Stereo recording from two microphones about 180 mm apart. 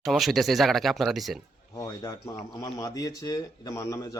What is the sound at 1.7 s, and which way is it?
Speech, 20° left (ahead or behind).